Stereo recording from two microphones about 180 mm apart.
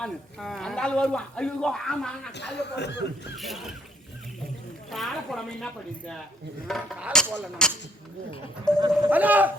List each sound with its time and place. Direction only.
0.0 s speech: centre (ahead or behind)
2.6 s speech: 70° left (ahead or behind)
3.3 s speech: centre (ahead or behind)
4.9 s speech: centre (ahead or behind)
6.7 s speech: centre (ahead or behind)
9.0 s speech: 10° right (ahead or behind)